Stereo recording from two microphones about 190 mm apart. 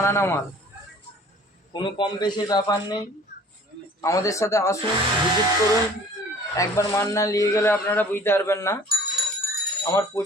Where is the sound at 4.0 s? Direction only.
15° left (ahead or behind).